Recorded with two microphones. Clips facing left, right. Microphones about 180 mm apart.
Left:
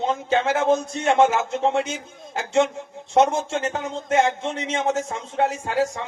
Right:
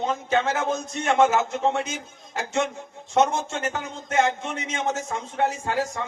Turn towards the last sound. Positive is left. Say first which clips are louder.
# left 3 dB
turn(degrees=25)  # may be behind; listen again after turning